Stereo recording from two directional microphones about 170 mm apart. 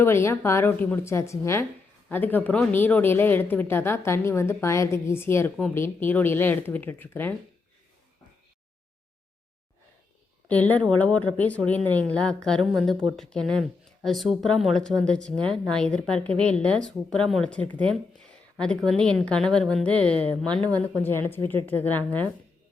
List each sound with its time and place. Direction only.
0.0 s a woman's voice: 15° left (ahead or behind)
10.5 s a woman's voice: 10° left (ahead or behind)